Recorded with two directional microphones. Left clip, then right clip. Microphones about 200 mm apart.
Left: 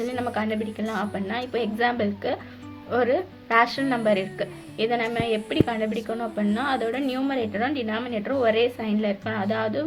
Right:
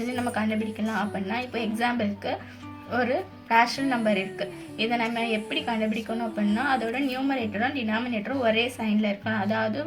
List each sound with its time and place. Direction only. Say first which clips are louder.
0.0 s a woman's voice: left 2 dB; 35° left (ahead or behind)
0.7 s a woman's voice: left 1 dB; centre (ahead or behind)
0.9 s a woman's voice: even; 35° left (ahead or behind)